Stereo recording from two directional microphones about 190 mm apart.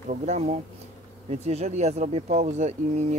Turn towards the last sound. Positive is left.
turn(degrees=-35)  # may be behind; listen again after turning